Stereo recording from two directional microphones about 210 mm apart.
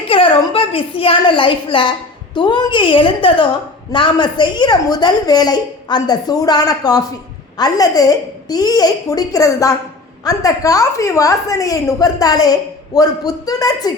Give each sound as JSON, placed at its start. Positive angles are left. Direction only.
{"t": 0.1, "sound": "a woman's voice", "side_deg": 25}